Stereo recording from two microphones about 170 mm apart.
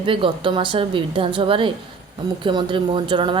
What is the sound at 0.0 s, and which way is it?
A woman's voice, 30° right (ahead or behind).